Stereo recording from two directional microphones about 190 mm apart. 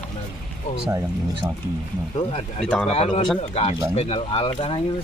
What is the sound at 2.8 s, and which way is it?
Speech, 30° left (ahead or behind).